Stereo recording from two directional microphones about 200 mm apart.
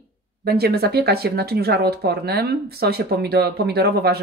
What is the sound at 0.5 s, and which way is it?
Speech, 55° right (ahead or behind).